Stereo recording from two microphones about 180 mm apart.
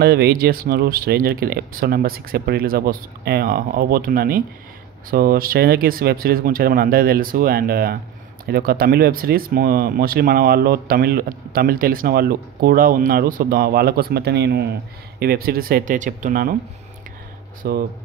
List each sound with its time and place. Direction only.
0.0 s speech: 60° right (ahead or behind)
17.6 s speech: 60° right (ahead or behind)